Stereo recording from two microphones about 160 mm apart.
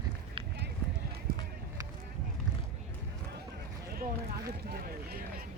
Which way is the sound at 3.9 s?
70° right (ahead or behind).